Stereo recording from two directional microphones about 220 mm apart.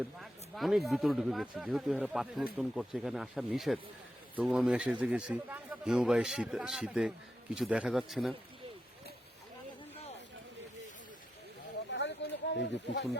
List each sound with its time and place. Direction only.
0.2 s speech: centre (ahead or behind)
11.9 s snake: 55° left (ahead or behind)